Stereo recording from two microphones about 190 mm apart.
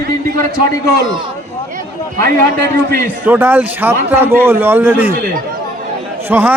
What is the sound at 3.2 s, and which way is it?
A man's voice, 10° right (ahead or behind).